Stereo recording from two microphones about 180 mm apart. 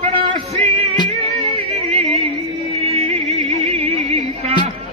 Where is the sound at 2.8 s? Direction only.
35° right (ahead or behind).